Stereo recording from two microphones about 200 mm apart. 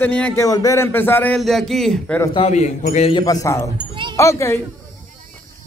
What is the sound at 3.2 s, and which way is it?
A man's voice, 15° left (ahead or behind).